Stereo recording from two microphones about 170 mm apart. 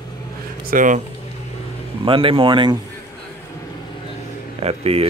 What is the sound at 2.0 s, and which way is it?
Speech, 30° right (ahead or behind).